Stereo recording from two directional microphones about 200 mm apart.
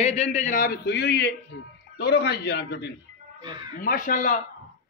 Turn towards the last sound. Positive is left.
turn(degrees=40)  # may be behind; listen again after turning